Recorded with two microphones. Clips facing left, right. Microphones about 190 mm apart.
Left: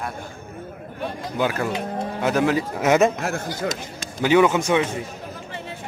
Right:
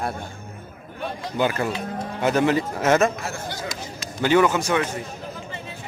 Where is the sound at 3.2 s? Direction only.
60° left (ahead or behind).